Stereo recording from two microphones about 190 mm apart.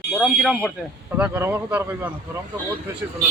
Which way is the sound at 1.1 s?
10° right (ahead or behind).